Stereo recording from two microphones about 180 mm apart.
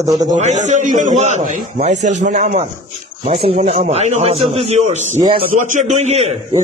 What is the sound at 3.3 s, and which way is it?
A man's voice, 30° right (ahead or behind).